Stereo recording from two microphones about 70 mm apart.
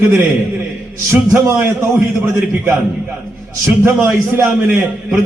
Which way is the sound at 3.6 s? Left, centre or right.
Right.